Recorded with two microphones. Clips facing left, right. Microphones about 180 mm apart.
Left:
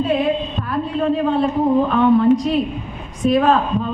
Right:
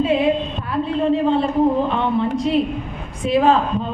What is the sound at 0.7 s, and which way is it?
A man's voice, 25° right (ahead or behind).